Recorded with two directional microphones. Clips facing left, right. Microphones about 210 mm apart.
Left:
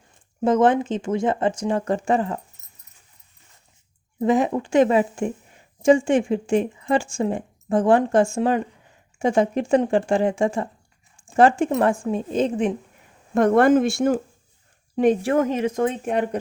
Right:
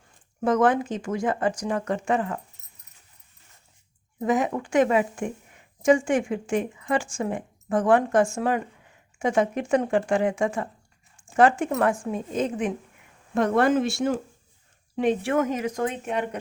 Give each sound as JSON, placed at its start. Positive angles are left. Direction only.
{"t": 0.4, "sound": "a woman's voice", "side_deg": 25}
{"t": 4.2, "sound": "a woman's voice", "side_deg": 30}
{"t": 13.3, "sound": "speech", "side_deg": 50}
{"t": 14.9, "sound": "speech", "side_deg": 40}
{"t": 16.0, "sound": "speech", "side_deg": 45}